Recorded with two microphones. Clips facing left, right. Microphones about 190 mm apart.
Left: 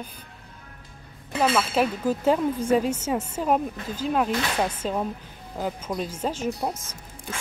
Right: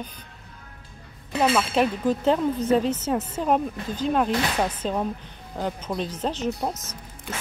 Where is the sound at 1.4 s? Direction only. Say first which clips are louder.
Right 1 dB; centre (ahead or behind).